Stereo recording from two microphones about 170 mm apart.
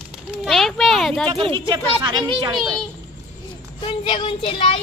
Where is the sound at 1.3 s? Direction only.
30° right (ahead or behind).